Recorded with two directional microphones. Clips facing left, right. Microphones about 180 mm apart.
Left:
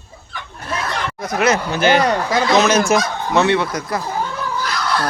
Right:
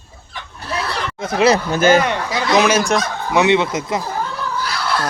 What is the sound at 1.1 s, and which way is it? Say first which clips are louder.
Speech: right 3 dB; 25° right (ahead or behind).